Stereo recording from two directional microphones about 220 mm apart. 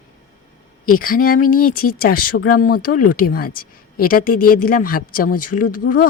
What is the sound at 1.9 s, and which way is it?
Speech, 45° left (ahead or behind).